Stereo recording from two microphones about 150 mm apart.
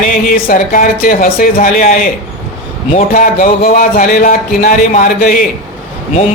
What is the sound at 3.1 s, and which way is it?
Speech, 65° left (ahead or behind).